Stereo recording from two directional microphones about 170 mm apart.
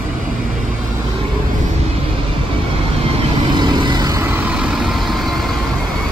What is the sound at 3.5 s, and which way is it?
Vehicle, 25° right (ahead or behind).